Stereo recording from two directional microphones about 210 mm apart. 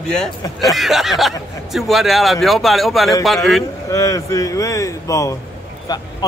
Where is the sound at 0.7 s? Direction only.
Centre (ahead or behind).